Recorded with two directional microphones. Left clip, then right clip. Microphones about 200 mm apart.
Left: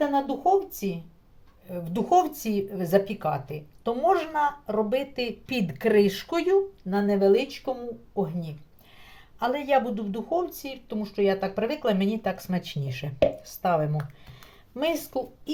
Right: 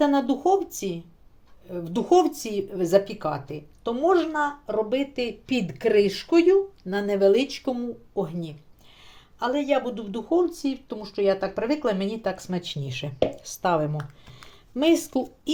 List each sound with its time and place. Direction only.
0.0 s speech: 35° right (ahead or behind)
9.4 s speech: 20° right (ahead or behind)